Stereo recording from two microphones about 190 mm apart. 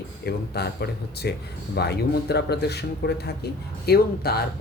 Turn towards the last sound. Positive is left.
turn(degrees=55)  # may be behind; listen again after turning